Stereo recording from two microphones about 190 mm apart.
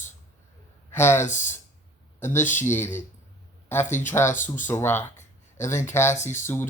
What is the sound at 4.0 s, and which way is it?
Speech, 10° left (ahead or behind).